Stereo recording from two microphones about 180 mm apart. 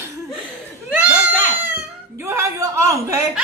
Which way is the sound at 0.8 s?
5° right (ahead or behind).